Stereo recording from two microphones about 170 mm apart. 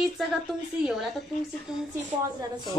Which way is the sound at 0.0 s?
Centre (ahead or behind).